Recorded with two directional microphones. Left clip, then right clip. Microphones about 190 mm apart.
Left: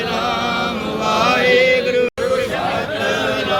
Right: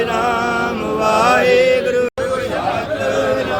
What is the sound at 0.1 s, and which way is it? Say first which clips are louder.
Music: right 2 dB; 45° right (ahead or behind).